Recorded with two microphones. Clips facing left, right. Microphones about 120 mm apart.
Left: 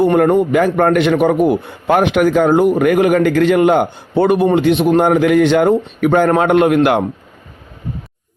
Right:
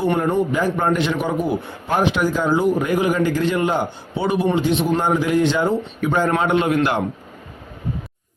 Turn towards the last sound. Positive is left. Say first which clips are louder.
# left 7 dB
turn(degrees=55)  # may be behind; listen again after turning